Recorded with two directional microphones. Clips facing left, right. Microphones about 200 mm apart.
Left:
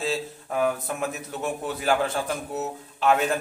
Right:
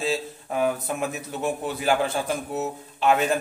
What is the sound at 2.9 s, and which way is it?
Speech, centre (ahead or behind).